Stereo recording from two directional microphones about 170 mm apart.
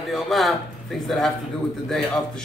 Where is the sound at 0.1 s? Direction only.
Centre (ahead or behind).